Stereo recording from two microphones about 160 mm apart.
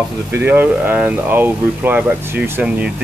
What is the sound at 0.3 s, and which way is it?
Speech, 10° right (ahead or behind).